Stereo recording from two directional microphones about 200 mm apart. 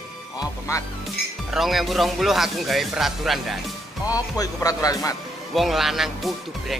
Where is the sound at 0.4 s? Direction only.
15° left (ahead or behind).